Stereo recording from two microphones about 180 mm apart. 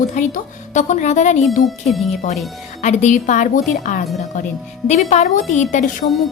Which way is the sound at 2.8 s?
40° left (ahead or behind).